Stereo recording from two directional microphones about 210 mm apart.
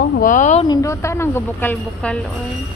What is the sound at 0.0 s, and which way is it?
Speech, 40° left (ahead or behind).